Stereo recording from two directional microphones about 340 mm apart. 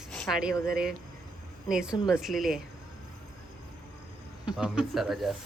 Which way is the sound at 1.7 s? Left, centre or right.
Centre.